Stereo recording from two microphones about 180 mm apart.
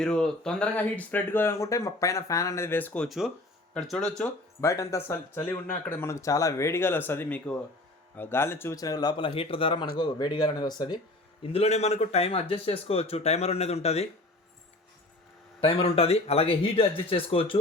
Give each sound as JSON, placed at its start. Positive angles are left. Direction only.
{"t": 0.0, "sound": "speech", "side_deg": 5}
{"t": 4.2, "sound": "speech", "side_deg": 15}
{"t": 11.4, "sound": "speech", "side_deg": 35}
{"t": 15.6, "sound": "speech", "side_deg": 30}